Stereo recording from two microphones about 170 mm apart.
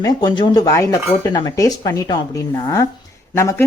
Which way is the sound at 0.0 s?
25° left (ahead or behind).